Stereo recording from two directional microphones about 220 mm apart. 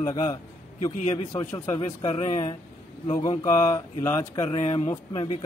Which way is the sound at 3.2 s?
15° left (ahead or behind).